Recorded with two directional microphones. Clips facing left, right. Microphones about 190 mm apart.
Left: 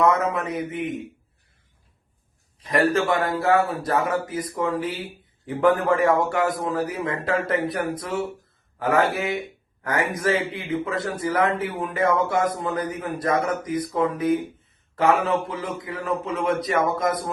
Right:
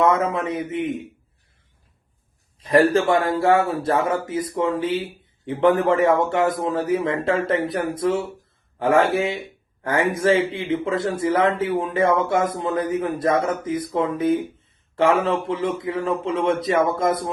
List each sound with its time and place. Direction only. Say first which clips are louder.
0.0 s speech: right 1 dB; 25° right (ahead or behind)
2.6 s speech: right 4 dB; 30° right (ahead or behind)